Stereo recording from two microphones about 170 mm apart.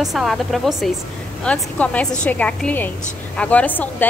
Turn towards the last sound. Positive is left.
turn(degrees=10)  # may be behind; listen again after turning